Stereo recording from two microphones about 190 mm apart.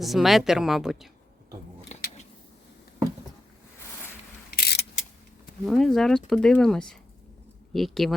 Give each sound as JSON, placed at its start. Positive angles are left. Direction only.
{"t": 0.0, "sound": "speech", "side_deg": 0}
{"t": 4.5, "sound": "a sound", "side_deg": 60}
{"t": 5.6, "sound": "speech", "side_deg": 0}